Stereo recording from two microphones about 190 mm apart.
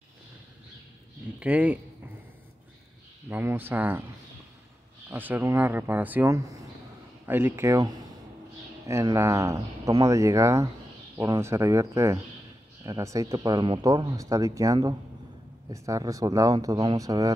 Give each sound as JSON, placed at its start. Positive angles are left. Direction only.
{"t": 1.4, "sound": "speech", "side_deg": -10}
{"t": 3.3, "sound": "speech", "side_deg": -10}
{"t": 5.1, "sound": "speech", "side_deg": -10}